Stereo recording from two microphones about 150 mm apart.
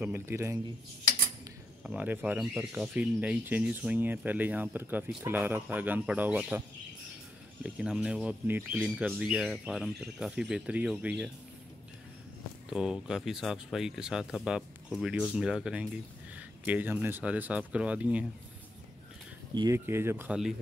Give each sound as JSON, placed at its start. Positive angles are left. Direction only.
{"t": 0.0, "sound": "speech", "side_deg": -15}
{"t": 1.8, "sound": "speech", "side_deg": -5}
{"t": 7.6, "sound": "speech", "side_deg": -5}
{"t": 12.6, "sound": "speech", "side_deg": -5}
{"t": 19.5, "sound": "speech", "side_deg": -25}
{"t": 19.9, "sound": "speech", "side_deg": -15}